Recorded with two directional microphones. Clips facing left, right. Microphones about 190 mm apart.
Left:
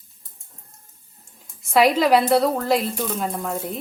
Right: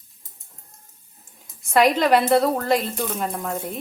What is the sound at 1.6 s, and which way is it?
A woman's voice, centre (ahead or behind).